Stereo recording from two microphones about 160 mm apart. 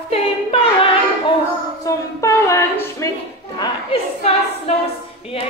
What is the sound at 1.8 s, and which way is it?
Speech, 20° left (ahead or behind).